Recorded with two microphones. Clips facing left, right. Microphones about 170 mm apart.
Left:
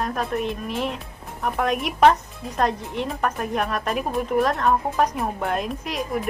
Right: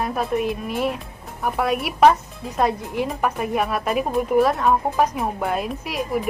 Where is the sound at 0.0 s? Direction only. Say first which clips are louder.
Right 3 dB; 10° right (ahead or behind).